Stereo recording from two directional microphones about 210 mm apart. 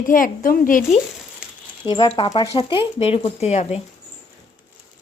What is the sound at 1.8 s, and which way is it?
Speech, 20° left (ahead or behind).